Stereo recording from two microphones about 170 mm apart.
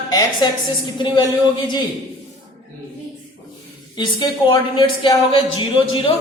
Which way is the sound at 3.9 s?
25° left (ahead or behind).